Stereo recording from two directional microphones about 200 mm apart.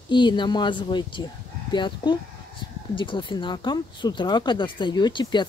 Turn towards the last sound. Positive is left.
turn(degrees=20)  # may be behind; listen again after turning